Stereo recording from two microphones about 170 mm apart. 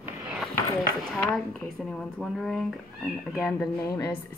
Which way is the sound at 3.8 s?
20° left (ahead or behind).